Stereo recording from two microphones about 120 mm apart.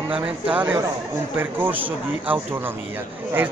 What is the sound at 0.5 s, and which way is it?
A man's voice, 15° right (ahead or behind).